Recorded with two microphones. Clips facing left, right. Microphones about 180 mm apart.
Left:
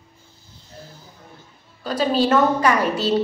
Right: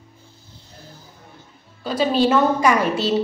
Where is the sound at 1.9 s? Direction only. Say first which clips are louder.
Right 1 dB; 40° left (ahead or behind).